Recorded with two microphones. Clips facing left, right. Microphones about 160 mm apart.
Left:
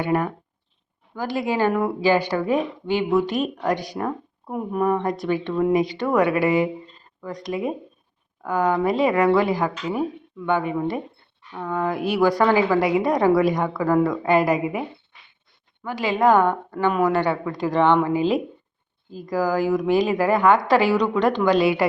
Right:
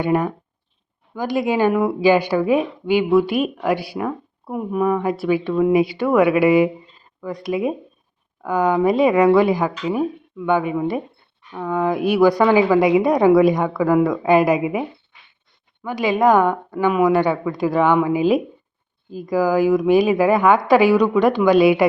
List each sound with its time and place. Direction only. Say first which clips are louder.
0.0 s a woman's voice: right 3 dB; 20° right (ahead or behind)